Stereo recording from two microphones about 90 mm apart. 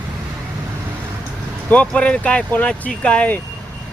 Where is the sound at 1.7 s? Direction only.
15° left (ahead or behind).